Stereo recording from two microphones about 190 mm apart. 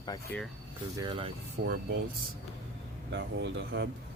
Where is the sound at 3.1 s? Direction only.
70° right (ahead or behind).